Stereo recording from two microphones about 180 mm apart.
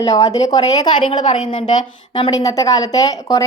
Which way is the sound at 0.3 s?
35° left (ahead or behind).